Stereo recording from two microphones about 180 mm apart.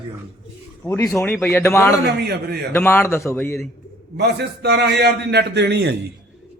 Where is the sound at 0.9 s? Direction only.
15° left (ahead or behind).